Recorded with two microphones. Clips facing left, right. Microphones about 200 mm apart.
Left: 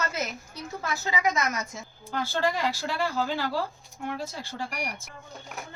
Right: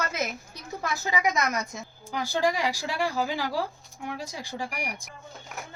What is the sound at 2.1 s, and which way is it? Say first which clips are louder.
A woman's voice: right 1 dB; 15° right (ahead or behind).